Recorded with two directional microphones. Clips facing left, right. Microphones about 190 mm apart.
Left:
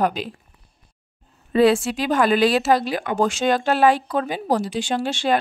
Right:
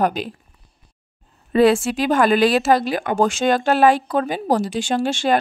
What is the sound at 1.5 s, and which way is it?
Speech, 50° right (ahead or behind).